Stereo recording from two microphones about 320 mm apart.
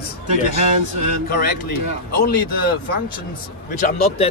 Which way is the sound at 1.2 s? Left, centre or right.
Left.